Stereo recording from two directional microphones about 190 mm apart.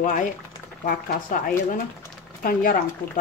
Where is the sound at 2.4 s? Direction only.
45° left (ahead or behind).